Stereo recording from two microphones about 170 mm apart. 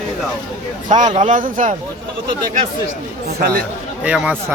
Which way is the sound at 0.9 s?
45° right (ahead or behind).